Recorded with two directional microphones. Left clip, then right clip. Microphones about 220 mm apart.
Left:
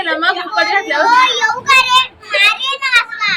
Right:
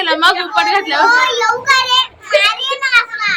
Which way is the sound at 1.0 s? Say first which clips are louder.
Left 1 dB; 15° right (ahead or behind).